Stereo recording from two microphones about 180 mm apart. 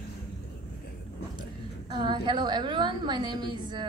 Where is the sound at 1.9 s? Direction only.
25° right (ahead or behind).